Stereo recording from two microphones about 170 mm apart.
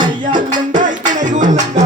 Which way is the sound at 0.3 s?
50° right (ahead or behind).